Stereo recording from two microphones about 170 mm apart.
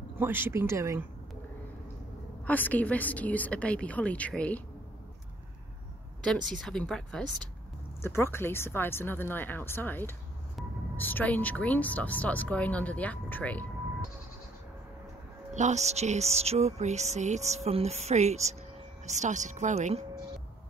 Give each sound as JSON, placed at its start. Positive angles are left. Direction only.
{"t": 0.2, "sound": "speech", "side_deg": -15}
{"t": 2.4, "sound": "speech", "side_deg": 10}
{"t": 6.6, "sound": "speech", "side_deg": 5}
{"t": 8.0, "sound": "speech", "side_deg": 15}
{"t": 15.5, "sound": "speech", "side_deg": -45}